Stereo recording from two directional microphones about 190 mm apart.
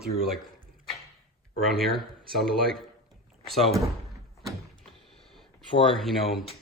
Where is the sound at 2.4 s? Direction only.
Centre (ahead or behind).